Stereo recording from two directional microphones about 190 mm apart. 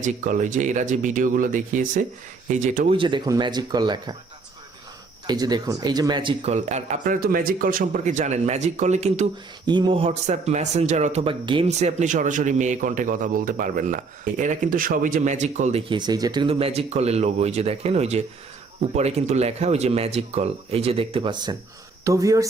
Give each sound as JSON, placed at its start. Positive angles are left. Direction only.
{"t": 0.0, "sound": "speech", "side_deg": -45}
{"t": 3.0, "sound": "speech", "side_deg": -25}
{"t": 5.2, "sound": "speech", "side_deg": -20}
{"t": 6.4, "sound": "speech", "side_deg": -35}
{"t": 9.6, "sound": "speech", "side_deg": -25}
{"t": 15.9, "sound": "speech", "side_deg": -20}